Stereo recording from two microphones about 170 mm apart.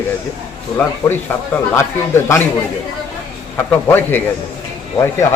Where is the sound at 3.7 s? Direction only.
10° left (ahead or behind).